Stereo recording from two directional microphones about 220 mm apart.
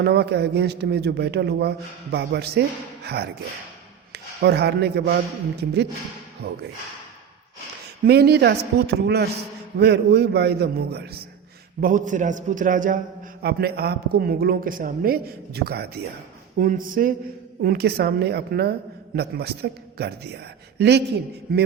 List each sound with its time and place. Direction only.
0.0 s speech: 45° right (ahead or behind)
8.0 s speech: 45° right (ahead or behind)
11.8 s a man's voice: 35° right (ahead or behind)